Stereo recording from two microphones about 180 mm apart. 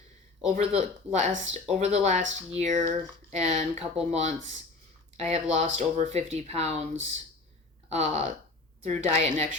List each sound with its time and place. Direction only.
0.5 s speech: 40° right (ahead or behind)
7.9 s speech: 40° right (ahead or behind)